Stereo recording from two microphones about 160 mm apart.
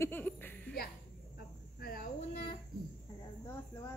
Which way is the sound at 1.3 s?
70° left (ahead or behind).